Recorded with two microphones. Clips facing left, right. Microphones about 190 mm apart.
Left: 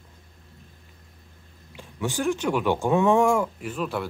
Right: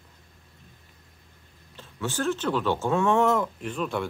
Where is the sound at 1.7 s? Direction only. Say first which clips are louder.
Left 2 dB; 15° left (ahead or behind).